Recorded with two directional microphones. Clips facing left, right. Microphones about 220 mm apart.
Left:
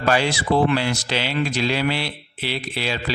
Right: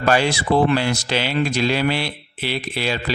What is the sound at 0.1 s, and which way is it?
A man's voice, 50° right (ahead or behind).